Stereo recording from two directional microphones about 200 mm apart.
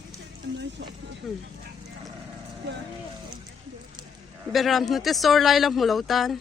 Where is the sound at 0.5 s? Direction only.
60° right (ahead or behind).